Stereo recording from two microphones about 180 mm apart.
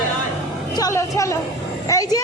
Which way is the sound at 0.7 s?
20° left (ahead or behind).